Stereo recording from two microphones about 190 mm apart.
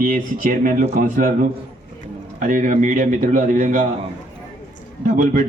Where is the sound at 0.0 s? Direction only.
45° right (ahead or behind).